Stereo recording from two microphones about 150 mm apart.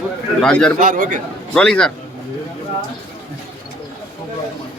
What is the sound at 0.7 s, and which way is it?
Speech, 55° right (ahead or behind).